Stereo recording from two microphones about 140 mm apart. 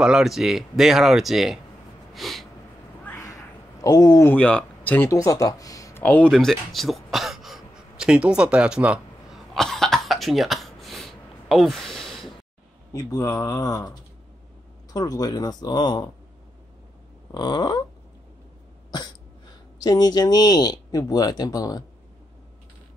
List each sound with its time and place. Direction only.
0.0 s speech: 5° right (ahead or behind)
2.1 s snort: centre (ahead or behind)
3.2 s a sound: 25° left (ahead or behind)
4.3 s speech: 10° left (ahead or behind)
5.1 s speech: 25° left (ahead or behind)
6.0 s a sound: 10° left (ahead or behind)
12.9 s speech: 25° left (ahead or behind)
17.3 s a sound: 30° left (ahead or behind)
19.8 s speech: 25° left (ahead or behind)